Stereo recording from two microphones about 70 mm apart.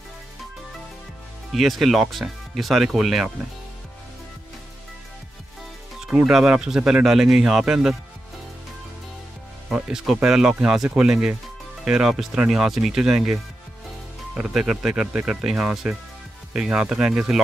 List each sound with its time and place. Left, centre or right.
1.5 s speech: centre
6.0 s speech: right
6.3 s speech: centre
9.7 s speech: centre
9.9 s speech: centre
14.5 s speech: centre